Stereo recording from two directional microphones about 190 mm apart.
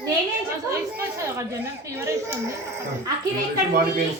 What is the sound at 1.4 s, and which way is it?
Speech, 15° right (ahead or behind).